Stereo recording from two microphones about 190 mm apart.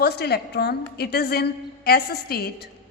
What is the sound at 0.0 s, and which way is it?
A woman's voice, 55° left (ahead or behind).